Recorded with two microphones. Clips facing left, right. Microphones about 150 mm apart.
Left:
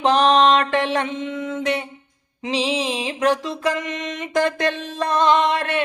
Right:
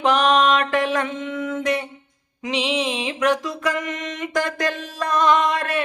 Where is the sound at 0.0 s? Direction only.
30° left (ahead or behind).